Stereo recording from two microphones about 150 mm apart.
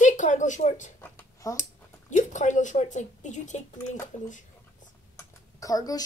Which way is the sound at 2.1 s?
55° left (ahead or behind).